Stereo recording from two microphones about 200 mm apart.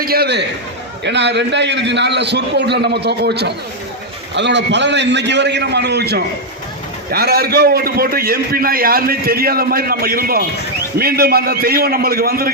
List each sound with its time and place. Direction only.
0.0 s a man's voice: 50° right (ahead or behind)